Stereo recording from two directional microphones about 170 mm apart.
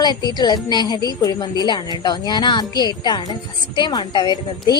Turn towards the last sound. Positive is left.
turn(degrees=25)  # may be behind; listen again after turning